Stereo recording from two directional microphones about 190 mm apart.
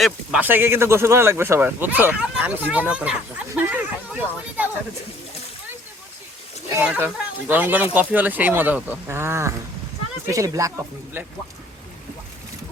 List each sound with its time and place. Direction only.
0.0 s speech: 5° right (ahead or behind)
6.7 s speech: 10° right (ahead or behind)